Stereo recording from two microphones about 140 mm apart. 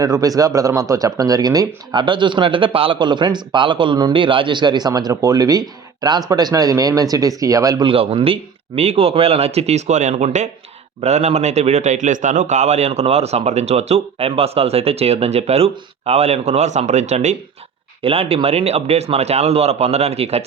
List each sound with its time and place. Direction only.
0.0 s a man's voice: 25° right (ahead or behind); by 20.4 s 50° right (ahead or behind)